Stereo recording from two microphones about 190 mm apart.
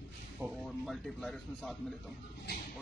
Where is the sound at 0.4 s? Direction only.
Centre (ahead or behind).